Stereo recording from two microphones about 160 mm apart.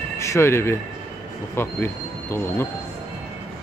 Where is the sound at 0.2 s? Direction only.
15° left (ahead or behind).